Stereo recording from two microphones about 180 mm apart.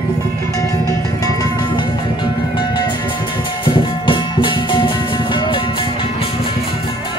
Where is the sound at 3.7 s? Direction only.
25° left (ahead or behind).